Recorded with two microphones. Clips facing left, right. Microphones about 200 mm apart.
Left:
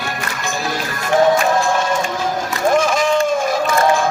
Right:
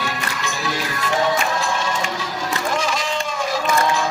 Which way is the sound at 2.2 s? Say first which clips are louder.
Left 6 dB; 50° left (ahead or behind).